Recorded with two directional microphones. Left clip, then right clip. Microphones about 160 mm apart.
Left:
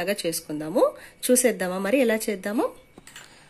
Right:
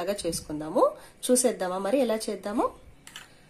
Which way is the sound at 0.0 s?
30° left (ahead or behind).